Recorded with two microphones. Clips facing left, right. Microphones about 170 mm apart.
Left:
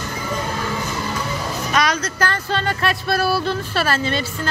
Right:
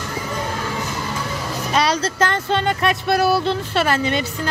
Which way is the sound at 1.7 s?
30° right (ahead or behind).